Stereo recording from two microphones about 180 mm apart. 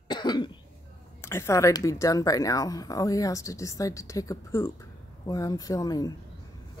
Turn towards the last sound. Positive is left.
turn(degrees=20)  # may be behind; listen again after turning